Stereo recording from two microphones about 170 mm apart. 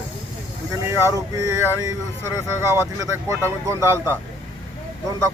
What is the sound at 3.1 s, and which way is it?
Speech, 20° right (ahead or behind).